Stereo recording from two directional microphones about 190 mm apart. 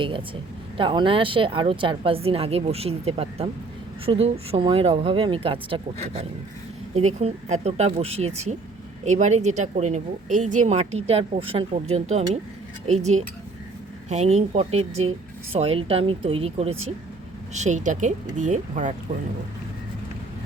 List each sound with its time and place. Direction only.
0.0 s a woman's voice: 25° right (ahead or behind)